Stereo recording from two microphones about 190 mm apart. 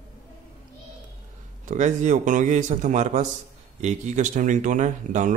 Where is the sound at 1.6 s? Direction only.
40° right (ahead or behind).